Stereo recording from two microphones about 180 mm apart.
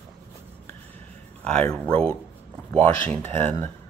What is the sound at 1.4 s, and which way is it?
Speech, 5° left (ahead or behind).